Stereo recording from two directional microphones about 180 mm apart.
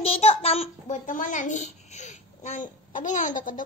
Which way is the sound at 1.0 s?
45° left (ahead or behind).